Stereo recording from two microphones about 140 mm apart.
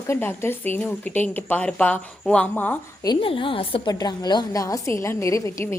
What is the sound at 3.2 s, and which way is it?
Speech, 40° left (ahead or behind).